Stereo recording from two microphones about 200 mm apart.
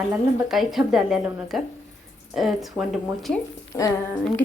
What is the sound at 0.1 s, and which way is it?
A woman's voice, 5° right (ahead or behind).